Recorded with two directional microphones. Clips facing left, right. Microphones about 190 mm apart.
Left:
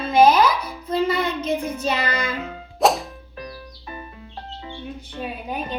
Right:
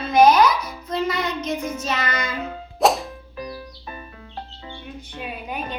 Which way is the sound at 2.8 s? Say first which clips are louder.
Even; centre (ahead or behind).